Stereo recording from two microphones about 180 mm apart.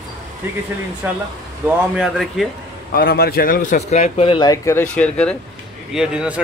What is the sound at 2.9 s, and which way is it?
A man's voice, 55° left (ahead or behind).